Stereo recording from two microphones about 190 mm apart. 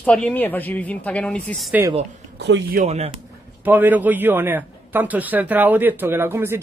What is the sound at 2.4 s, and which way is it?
Speech, 65° right (ahead or behind).